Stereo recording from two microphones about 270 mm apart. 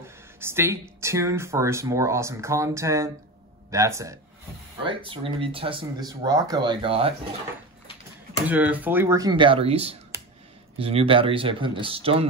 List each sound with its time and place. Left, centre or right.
0.0 s speech: centre
8.5 s speech: centre